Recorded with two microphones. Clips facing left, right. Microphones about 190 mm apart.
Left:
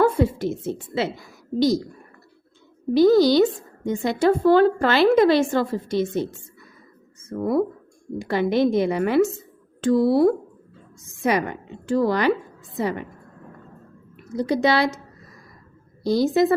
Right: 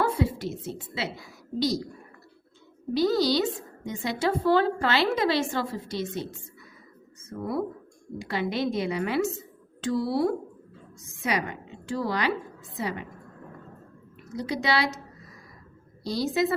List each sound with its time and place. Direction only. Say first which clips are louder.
0.0 s a woman's voice: left 7 dB; 50° left (ahead or behind)
2.9 s a woman's voice: left 8 dB; 55° left (ahead or behind)
7.3 s a woman's voice: left 8 dB; 50° left (ahead or behind)
14.3 s a woman's voice: left 7 dB; 50° left (ahead or behind)
16.0 s a woman's voice: left 7 dB; 50° left (ahead or behind)